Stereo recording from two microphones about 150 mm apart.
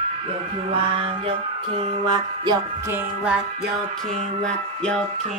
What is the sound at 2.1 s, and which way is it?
Music, 30° right (ahead or behind).